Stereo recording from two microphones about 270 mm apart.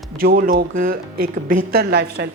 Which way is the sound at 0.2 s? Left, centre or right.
Right.